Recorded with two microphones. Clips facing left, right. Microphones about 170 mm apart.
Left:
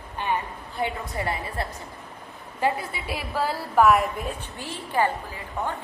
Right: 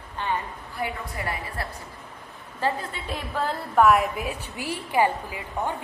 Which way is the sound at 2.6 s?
10° left (ahead or behind).